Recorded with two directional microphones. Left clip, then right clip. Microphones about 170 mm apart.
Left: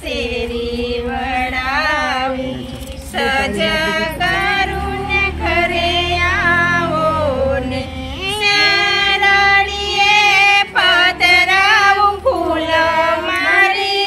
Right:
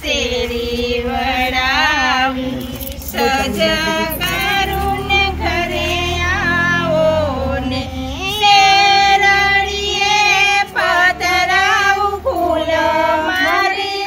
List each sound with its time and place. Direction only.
1.4 s a sound: 35° left (ahead or behind)
3.2 s female singing: 35° left (ahead or behind)
6.2 s music: 35° left (ahead or behind)
8.5 s child singing: 35° left (ahead or behind)
10.0 s female singing: 35° left (ahead or behind)